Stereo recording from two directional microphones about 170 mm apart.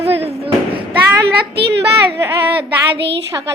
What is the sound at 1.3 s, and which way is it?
Child singing, 75° right (ahead or behind).